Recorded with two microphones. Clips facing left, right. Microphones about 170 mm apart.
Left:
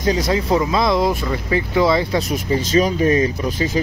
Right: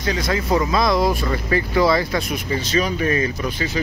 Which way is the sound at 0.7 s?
20° left (ahead or behind).